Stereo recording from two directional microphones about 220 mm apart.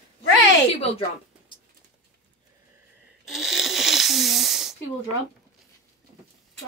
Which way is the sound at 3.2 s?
Centre (ahead or behind).